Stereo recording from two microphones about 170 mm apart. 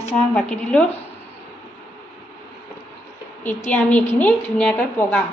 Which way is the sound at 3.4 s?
10° left (ahead or behind).